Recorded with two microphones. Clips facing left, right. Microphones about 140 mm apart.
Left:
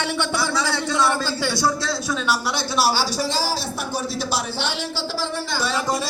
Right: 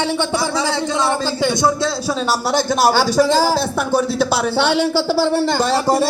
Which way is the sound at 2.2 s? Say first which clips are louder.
Right 8 dB; 40° right (ahead or behind).